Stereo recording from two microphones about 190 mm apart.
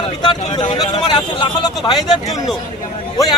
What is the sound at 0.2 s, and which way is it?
Speech, 25° left (ahead or behind).